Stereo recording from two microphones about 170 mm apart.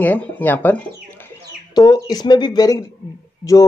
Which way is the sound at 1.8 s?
25° left (ahead or behind).